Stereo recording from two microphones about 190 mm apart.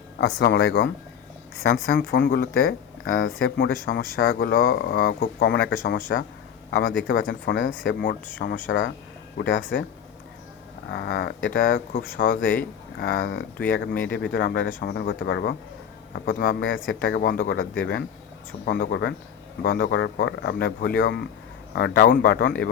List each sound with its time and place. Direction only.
0.2 s speech: 70° left (ahead or behind); by 2.7 s 55° left (ahead or behind)
3.0 s speech: 85° left
3.6 s speech: 55° left (ahead or behind)
5.4 s speech: 70° left (ahead or behind)
10.9 s speech: 60° left (ahead or behind)
13.2 s speech: 80° left
13.9 s speech: 10° left (ahead or behind)
14.2 s speech: 60° left (ahead or behind)
16.1 s speech: 80° left
17.0 s speech: 55° left (ahead or behind)
17.4 s speech: 80° left
18.6 s speech: 60° left (ahead or behind)
21.8 s speech: 55° left (ahead or behind)